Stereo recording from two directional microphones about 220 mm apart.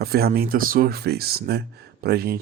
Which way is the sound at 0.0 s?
45° right (ahead or behind).